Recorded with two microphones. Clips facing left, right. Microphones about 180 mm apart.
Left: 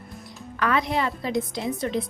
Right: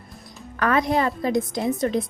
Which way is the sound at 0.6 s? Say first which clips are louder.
Right 3 dB; 45° right (ahead or behind).